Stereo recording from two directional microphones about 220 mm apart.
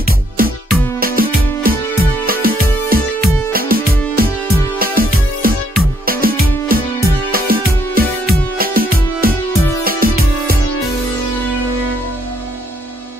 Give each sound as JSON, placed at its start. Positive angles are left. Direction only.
{"t": 0.4, "sound": "music", "side_deg": -40}